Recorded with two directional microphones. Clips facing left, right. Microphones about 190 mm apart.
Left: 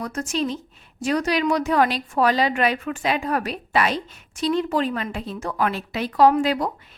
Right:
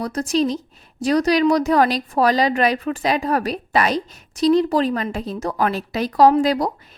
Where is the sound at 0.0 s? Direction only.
35° right (ahead or behind).